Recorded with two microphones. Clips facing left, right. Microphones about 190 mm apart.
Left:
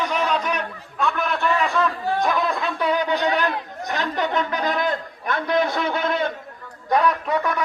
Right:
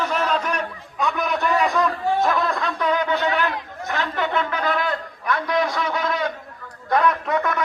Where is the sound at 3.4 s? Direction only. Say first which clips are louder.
Left 1 dB; 20° left (ahead or behind).